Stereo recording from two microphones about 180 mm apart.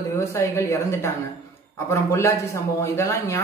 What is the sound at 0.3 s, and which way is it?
Speech, 15° left (ahead or behind).